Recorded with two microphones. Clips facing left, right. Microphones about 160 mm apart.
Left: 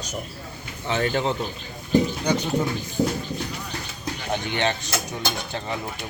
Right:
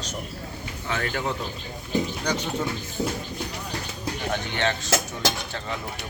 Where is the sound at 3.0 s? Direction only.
45° left (ahead or behind).